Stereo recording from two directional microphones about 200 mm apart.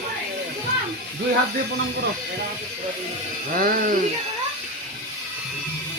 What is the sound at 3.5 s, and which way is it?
Speech, 45° right (ahead or behind).